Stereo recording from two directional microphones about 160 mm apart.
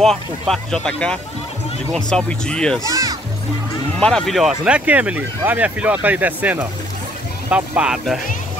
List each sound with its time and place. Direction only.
0.0 s speech: centre (ahead or behind)
2.8 s speech: 20° right (ahead or behind)
4.0 s speech: 5° left (ahead or behind)